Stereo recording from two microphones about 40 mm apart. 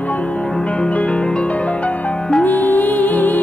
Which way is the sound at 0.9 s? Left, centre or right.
Left.